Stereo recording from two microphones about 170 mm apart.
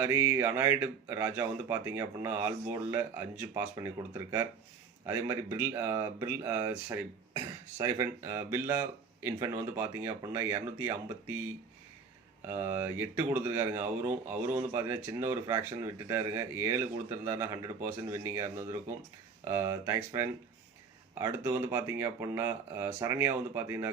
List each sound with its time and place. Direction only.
0.0 s speech: 15° right (ahead or behind)
12.5 s speech: 15° right (ahead or behind)